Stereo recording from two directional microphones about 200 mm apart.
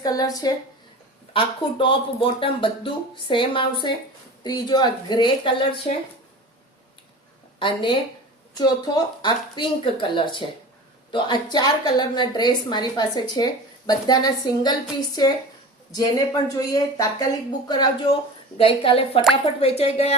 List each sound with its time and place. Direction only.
0.0 s a woman's voice: 20° left (ahead or behind)
7.6 s a woman's voice: 25° left (ahead or behind)